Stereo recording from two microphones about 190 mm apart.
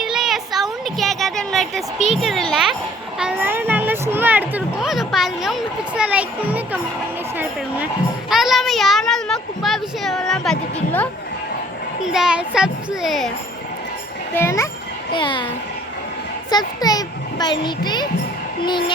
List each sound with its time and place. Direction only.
0.0 s a sound: centre (ahead or behind)
2.0 s a child's voice: centre (ahead or behind)
8.3 s a child's voice: centre (ahead or behind)
12.0 s a child's voice: 5° right (ahead or behind)
14.3 s a child's voice: 15° left (ahead or behind)
15.1 s a child's voice: 25° left (ahead or behind)
16.5 s a child's voice: 20° left (ahead or behind)